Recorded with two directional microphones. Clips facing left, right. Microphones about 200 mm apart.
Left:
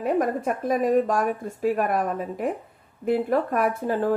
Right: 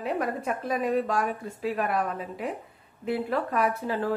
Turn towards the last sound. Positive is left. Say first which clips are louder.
# left 4 dB
turn(degrees=45)  # may be behind; listen again after turning